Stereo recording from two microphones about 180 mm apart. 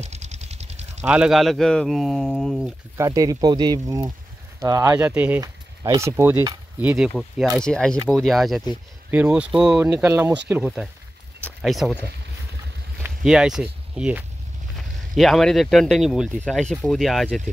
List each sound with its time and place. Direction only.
0.0 s vehicle: 40° right (ahead or behind)
1.0 s speech: 5° right (ahead or behind)
3.0 s speech: 20° right (ahead or behind)
7.5 s speech: 5° left (ahead or behind); by 10.4 s 15° right (ahead or behind)
11.4 s a sound: centre (ahead or behind)
13.0 s speech: 5° right (ahead or behind)